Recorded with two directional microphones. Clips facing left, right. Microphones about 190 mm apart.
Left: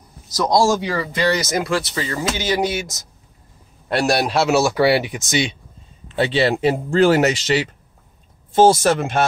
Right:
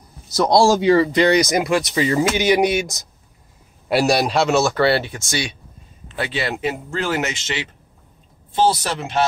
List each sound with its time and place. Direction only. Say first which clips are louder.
0.3 s speech: right 2 dB; 30° right (ahead or behind)
3.9 s a man's voice: right 1 dB; centre (ahead or behind); by 9.2 s 50° left (ahead or behind)